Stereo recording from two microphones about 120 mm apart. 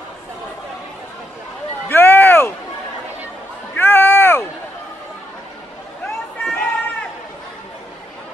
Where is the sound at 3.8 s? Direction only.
20° left (ahead or behind).